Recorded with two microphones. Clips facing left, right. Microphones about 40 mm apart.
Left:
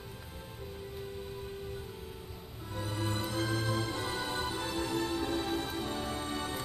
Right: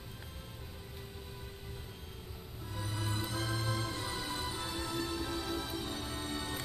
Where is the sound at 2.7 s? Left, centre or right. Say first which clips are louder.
Left 4 dB; left.